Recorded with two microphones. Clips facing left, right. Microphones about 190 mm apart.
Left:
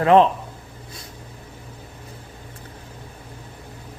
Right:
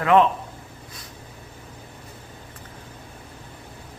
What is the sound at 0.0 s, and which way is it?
Speech, 30° left (ahead or behind).